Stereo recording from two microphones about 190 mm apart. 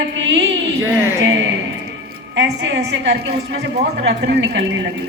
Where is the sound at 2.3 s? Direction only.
70° right (ahead or behind).